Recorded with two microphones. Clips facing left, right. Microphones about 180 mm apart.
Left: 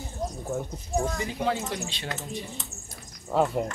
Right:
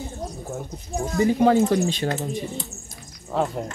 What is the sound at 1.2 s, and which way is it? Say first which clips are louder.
Speech: right 11 dB; 40° right (ahead or behind).